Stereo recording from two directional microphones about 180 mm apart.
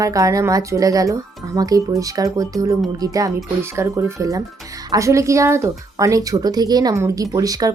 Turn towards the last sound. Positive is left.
turn(degrees=-20)  # may be behind; listen again after turning